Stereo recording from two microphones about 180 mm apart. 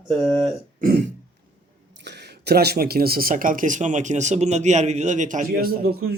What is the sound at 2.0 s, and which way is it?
Speech, 65° right (ahead or behind).